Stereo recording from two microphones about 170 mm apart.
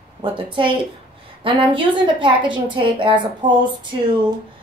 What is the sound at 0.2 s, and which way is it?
A woman's voice, 30° right (ahead or behind).